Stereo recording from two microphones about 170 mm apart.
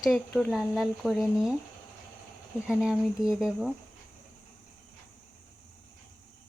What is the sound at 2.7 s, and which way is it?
Speech, 5° right (ahead or behind).